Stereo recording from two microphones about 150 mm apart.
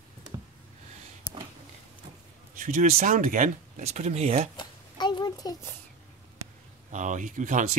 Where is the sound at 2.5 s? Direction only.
60° right (ahead or behind); by 4.5 s 45° right (ahead or behind).